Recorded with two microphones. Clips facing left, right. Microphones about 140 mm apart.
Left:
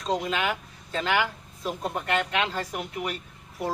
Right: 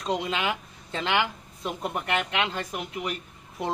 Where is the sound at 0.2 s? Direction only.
20° right (ahead or behind).